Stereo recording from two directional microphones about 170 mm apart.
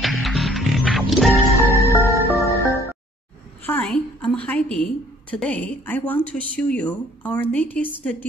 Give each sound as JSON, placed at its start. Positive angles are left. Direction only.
{"t": 0.0, "sound": "music", "side_deg": 0}
{"t": 1.3, "sound": "music", "side_deg": -15}
{"t": 3.6, "sound": "a sound", "side_deg": 10}
{"t": 5.4, "sound": "speech", "side_deg": 5}